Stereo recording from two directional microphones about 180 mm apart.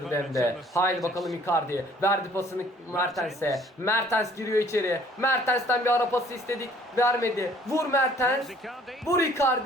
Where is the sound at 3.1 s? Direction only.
Centre (ahead or behind).